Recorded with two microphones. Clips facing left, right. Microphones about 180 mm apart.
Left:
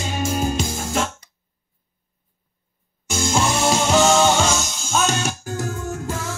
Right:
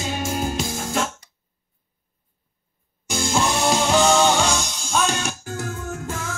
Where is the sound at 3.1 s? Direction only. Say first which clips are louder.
Left 1 dB; centre (ahead or behind).